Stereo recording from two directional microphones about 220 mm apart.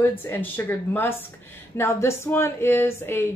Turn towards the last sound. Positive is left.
turn(degrees=10)  # may be behind; listen again after turning